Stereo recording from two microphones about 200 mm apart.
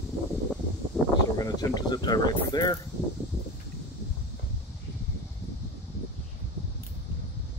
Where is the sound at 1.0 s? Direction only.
Centre (ahead or behind).